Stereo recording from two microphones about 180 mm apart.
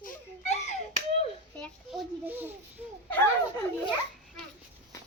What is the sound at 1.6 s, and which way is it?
Children playing, centre (ahead or behind).